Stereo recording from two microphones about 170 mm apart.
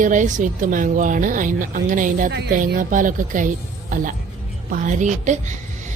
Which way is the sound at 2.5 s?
50° right (ahead or behind).